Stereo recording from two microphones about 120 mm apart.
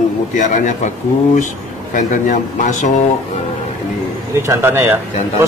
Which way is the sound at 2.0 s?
90° left.